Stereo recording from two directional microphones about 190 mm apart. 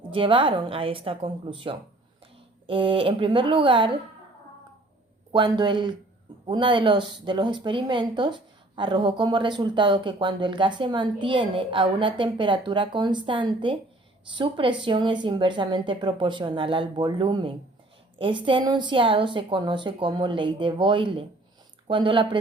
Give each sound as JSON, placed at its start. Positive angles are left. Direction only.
{"t": 0.1, "sound": "speech", "side_deg": -25}
{"t": 5.3, "sound": "speech", "side_deg": -25}